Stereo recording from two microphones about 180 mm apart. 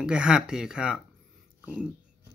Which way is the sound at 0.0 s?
5° right (ahead or behind).